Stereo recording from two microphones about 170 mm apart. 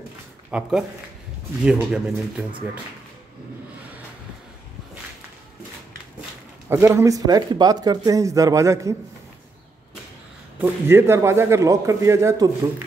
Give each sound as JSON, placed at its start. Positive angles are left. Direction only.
{"t": 0.5, "sound": "speech", "side_deg": -5}
{"t": 6.7, "sound": "speech", "side_deg": -15}
{"t": 10.6, "sound": "a man's voice", "side_deg": -15}